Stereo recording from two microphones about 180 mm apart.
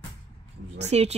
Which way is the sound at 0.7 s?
35° right (ahead or behind).